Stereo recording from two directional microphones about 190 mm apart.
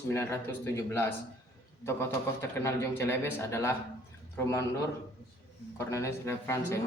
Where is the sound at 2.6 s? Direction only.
15° left (ahead or behind).